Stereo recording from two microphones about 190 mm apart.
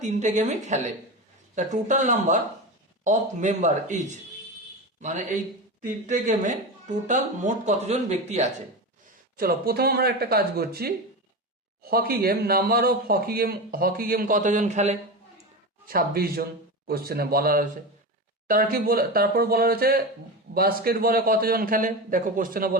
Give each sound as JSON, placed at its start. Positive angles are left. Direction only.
{"t": 0.0, "sound": "speech", "side_deg": -40}
{"t": 5.0, "sound": "speech", "side_deg": -40}
{"t": 9.4, "sound": "speech", "side_deg": -50}
{"t": 15.9, "sound": "speech", "side_deg": -50}